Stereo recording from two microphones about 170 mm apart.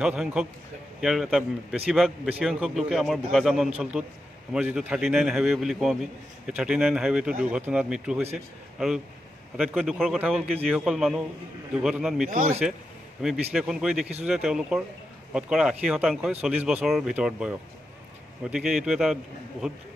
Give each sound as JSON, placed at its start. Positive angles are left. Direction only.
{"t": 0.0, "sound": "speech", "side_deg": -5}
{"t": 12.3, "sound": "speech", "side_deg": -55}
{"t": 13.2, "sound": "speech", "side_deg": 0}